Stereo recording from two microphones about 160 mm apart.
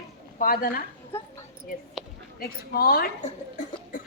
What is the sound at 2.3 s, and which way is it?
Speech, 70° left (ahead or behind).